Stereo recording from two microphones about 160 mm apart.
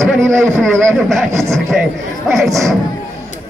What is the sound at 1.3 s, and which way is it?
Speech, 20° right (ahead or behind).